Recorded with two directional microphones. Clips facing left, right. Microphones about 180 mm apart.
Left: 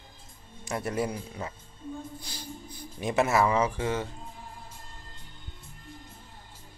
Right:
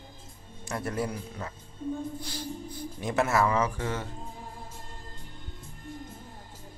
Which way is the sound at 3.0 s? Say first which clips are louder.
Left 1 dB; 15° left (ahead or behind).